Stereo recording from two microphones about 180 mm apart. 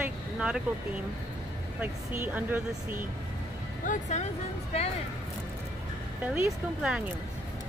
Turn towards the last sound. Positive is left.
turn(degrees=-5)  # may be behind; listen again after turning